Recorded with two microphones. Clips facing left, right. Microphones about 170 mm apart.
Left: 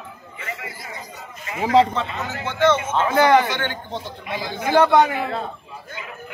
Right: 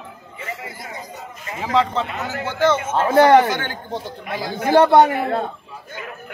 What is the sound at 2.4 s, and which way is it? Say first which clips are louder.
A man's voice: even; 40° right (ahead or behind).